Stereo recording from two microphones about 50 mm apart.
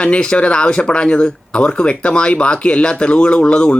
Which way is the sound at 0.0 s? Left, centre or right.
Left.